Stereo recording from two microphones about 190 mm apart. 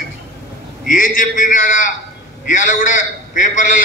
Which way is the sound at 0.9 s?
45° left (ahead or behind).